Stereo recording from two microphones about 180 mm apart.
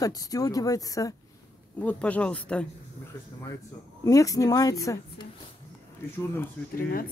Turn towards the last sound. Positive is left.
turn(degrees=50)  # may be behind; listen again after turning